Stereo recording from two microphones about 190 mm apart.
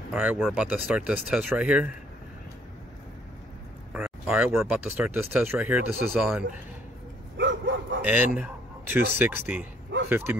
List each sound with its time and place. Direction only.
0.1 s speech: 5° right (ahead or behind)
3.9 s speech: 10° right (ahead or behind)
7.3 s dog: 70° right (ahead or behind)
8.0 s speech: 10° right (ahead or behind)